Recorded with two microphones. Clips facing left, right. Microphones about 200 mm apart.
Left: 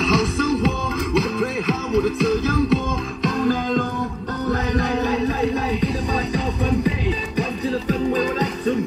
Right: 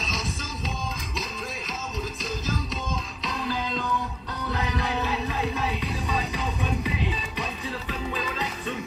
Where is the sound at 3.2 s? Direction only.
50° left (ahead or behind).